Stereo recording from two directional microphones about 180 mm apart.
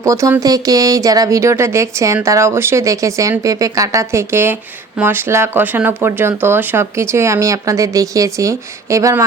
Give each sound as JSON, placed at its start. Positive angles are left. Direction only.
{"t": 0.0, "sound": "speech", "side_deg": -15}